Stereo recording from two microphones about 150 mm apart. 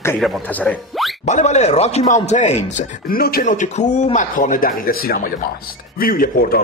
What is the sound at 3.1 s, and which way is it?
A man's voice, 75° left (ahead or behind).